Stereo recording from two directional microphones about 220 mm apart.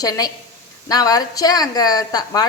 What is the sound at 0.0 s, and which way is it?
A woman's voice, 15° left (ahead or behind).